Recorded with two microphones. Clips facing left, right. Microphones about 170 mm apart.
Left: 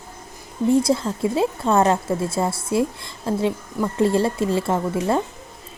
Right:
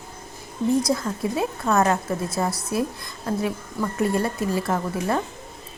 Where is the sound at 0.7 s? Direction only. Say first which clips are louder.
Left 4 dB; 25° left (ahead or behind).